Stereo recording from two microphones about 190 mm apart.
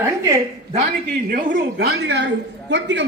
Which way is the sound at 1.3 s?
45° right (ahead or behind).